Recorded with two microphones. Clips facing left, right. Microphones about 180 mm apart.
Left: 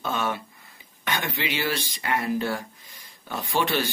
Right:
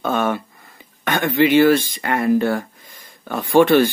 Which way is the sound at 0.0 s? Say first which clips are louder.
Right 8 dB; 50° right (ahead or behind).